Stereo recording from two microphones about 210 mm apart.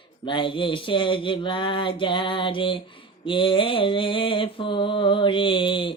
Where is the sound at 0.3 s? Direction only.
25° left (ahead or behind).